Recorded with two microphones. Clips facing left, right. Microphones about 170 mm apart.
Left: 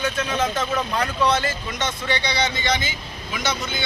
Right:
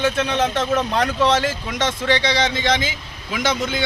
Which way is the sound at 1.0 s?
85° right.